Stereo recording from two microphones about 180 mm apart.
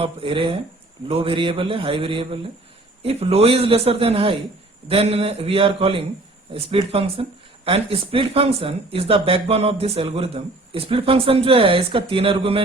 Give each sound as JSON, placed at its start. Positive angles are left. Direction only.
{"t": 0.0, "sound": "a man's voice", "side_deg": -30}